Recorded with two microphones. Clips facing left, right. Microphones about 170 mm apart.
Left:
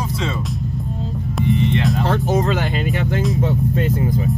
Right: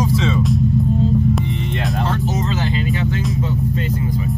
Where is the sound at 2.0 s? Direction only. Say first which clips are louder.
Left 3 dB; 55° left (ahead or behind).